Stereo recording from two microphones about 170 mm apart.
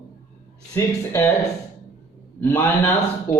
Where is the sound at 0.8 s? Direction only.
15° left (ahead or behind).